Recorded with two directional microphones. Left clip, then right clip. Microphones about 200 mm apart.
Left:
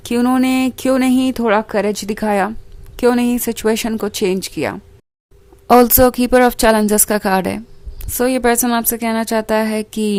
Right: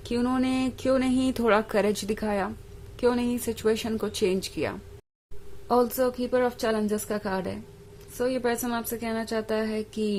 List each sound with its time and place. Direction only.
0.0 s speech: 35° left (ahead or behind)
5.6 s a woman's voice: 45° left (ahead or behind)